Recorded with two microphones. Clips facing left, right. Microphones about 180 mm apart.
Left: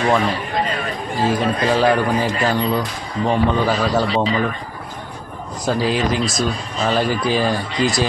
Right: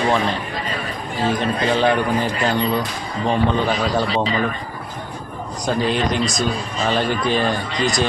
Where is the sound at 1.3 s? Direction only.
5° left (ahead or behind).